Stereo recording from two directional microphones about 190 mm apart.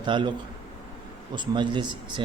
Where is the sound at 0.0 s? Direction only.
25° right (ahead or behind).